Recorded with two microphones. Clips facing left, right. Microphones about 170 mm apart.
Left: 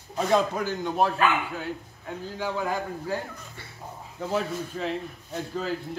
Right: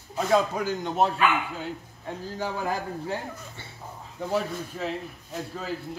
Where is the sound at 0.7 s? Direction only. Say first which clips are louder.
Even; 20° right (ahead or behind).